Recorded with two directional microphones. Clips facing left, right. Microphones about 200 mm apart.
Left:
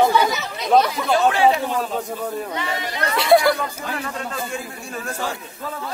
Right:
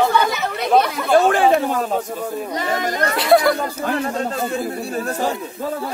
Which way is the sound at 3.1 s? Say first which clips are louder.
Even; centre (ahead or behind).